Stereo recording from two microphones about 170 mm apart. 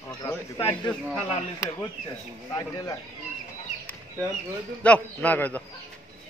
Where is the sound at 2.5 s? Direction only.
20° left (ahead or behind).